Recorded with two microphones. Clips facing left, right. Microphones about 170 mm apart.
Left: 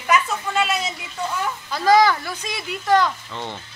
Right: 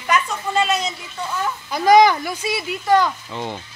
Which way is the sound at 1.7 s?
15° right (ahead or behind).